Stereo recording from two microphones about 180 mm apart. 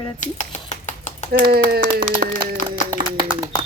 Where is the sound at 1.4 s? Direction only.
60° right (ahead or behind).